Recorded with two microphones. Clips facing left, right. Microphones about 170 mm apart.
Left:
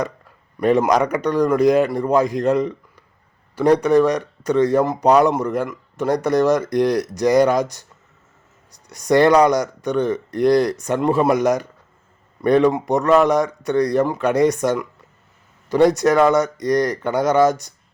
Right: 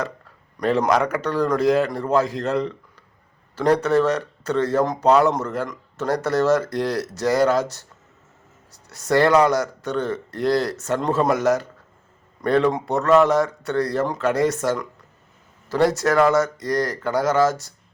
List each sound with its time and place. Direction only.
0.5 s speech: 10° left (ahead or behind)
8.9 s speech: 15° left (ahead or behind)